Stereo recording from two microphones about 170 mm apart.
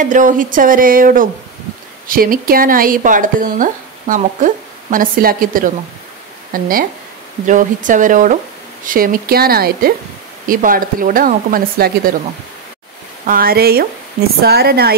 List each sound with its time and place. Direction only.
0.0 s speech: 50° right (ahead or behind)
13.3 s speech: 60° right (ahead or behind)